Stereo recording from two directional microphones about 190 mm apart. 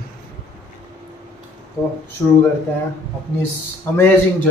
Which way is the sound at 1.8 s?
15° left (ahead or behind).